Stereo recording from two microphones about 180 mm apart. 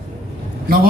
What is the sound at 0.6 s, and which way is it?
Speech, 55° right (ahead or behind).